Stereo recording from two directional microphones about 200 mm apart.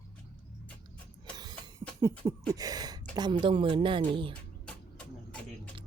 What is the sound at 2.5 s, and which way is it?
Speech, 20° right (ahead or behind).